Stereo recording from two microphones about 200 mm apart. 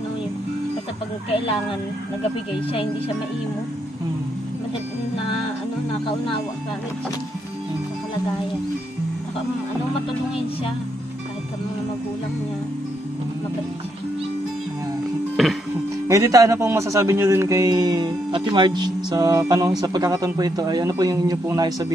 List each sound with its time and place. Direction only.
1.3 s speech: 25° left (ahead or behind)
15.4 s music: centre (ahead or behind)
16.1 s a man's voice: 15° right (ahead or behind)